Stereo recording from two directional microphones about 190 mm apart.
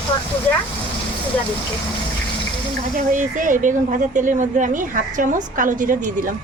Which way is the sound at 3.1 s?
45° right (ahead or behind).